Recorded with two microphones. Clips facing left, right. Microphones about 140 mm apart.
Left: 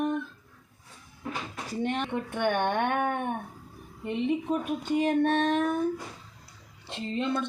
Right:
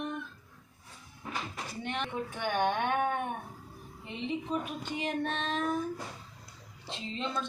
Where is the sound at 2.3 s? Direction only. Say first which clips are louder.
Left 4 dB; 60° left (ahead or behind).